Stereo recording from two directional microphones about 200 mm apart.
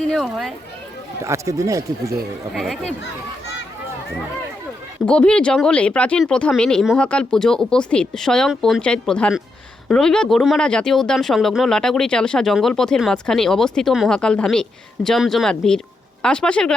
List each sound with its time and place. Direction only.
0.1 s speech: centre (ahead or behind)
1.2 s speech: 15° right (ahead or behind)
2.5 s speech: centre (ahead or behind)
5.0 s speech: 5° left (ahead or behind)